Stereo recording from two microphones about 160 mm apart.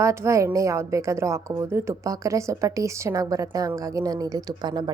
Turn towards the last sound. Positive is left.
turn(degrees=-25)  # may be behind; listen again after turning